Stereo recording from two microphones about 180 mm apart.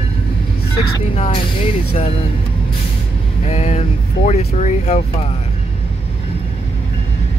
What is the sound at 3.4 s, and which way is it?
Speech, 40° left (ahead or behind).